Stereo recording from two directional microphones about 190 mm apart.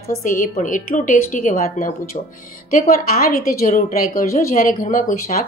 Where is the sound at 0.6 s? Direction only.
45° left (ahead or behind).